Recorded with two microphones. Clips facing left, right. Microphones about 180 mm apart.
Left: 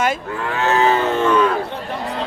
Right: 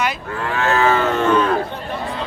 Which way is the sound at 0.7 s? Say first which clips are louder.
Left 1 dB; 20° left (ahead or behind).